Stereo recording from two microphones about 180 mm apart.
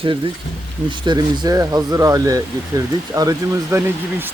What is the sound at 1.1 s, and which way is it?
Speech, 25° right (ahead or behind).